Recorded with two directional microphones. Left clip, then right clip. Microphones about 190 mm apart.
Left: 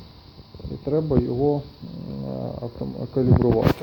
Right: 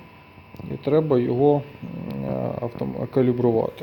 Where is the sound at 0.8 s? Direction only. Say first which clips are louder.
Right 3 dB; 15° right (ahead or behind).